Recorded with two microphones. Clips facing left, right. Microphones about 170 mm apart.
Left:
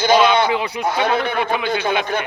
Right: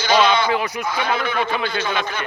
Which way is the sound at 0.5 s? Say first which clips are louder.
Left 1 dB; 25° left (ahead or behind).